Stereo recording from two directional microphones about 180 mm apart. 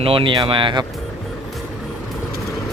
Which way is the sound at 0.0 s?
30° right (ahead or behind).